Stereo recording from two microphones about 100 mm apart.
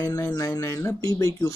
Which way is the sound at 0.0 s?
30° left (ahead or behind).